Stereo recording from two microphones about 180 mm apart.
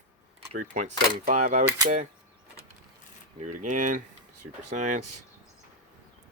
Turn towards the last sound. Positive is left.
turn(degrees=-40)  # may be behind; listen again after turning